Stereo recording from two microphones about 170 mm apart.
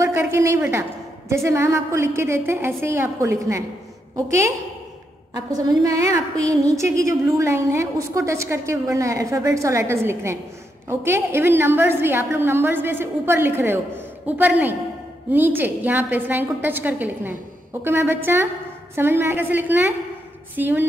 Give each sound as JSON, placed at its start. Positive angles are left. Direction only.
{"t": 0.0, "sound": "a woman's voice", "side_deg": -15}
{"t": 5.3, "sound": "a woman's voice", "side_deg": -25}